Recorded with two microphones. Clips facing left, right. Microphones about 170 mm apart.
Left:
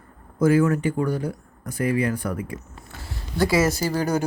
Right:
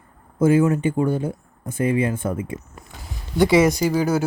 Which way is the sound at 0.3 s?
25° right (ahead or behind).